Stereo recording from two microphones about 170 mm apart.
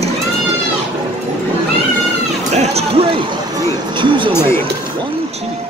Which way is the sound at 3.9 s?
30° right (ahead or behind).